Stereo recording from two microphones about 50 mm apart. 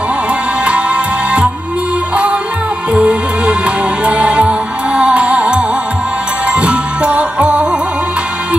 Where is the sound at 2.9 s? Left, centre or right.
Right.